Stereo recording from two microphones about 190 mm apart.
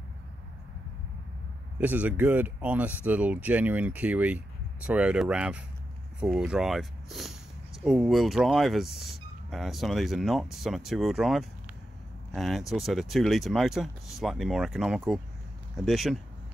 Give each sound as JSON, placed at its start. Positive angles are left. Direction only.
{"t": 1.8, "sound": "speech", "side_deg": -10}